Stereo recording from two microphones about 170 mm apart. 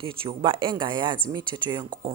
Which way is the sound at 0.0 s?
30° right (ahead or behind).